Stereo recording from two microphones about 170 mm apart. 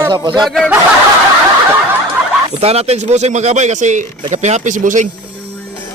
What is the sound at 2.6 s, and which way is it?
Speech, 40° right (ahead or behind).